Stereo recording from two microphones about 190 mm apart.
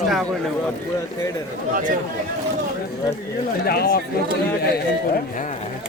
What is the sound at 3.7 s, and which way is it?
Speech, 55° left (ahead or behind).